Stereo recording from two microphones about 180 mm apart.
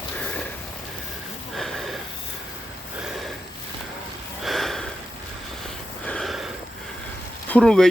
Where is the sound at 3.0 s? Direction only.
Centre (ahead or behind).